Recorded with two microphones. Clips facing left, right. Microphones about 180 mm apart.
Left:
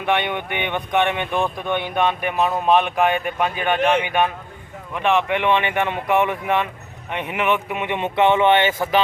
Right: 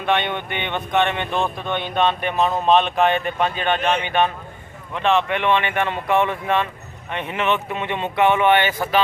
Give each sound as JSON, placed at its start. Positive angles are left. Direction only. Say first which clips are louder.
{"t": 0.0, "sound": "speech", "louder": "even", "side_deg": 15}